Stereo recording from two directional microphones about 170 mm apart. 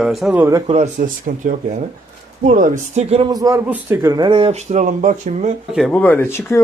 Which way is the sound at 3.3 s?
20° right (ahead or behind).